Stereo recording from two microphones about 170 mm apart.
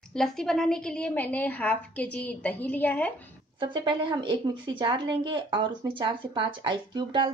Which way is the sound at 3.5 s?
30° right (ahead or behind).